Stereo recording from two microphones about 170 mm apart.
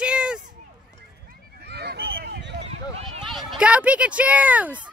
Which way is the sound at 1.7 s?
75° right (ahead or behind).